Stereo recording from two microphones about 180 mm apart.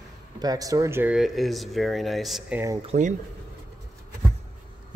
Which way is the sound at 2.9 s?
45° right (ahead or behind).